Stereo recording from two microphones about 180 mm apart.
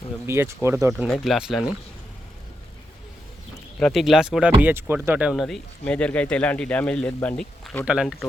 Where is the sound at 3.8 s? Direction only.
Centre (ahead or behind).